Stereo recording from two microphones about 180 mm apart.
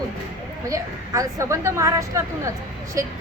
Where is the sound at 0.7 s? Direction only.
20° right (ahead or behind).